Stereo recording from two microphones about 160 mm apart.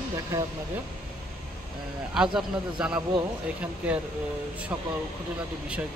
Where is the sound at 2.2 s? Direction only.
5° right (ahead or behind).